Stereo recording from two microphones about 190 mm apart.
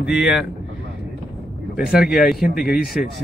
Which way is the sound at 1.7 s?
Centre (ahead or behind).